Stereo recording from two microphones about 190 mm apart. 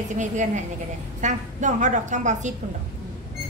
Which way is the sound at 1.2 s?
40° right (ahead or behind).